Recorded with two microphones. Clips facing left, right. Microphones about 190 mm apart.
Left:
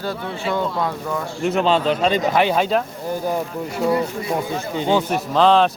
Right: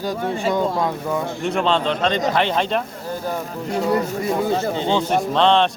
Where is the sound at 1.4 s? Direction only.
Centre (ahead or behind).